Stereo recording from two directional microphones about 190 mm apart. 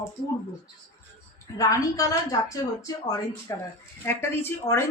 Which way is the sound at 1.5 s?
15° left (ahead or behind).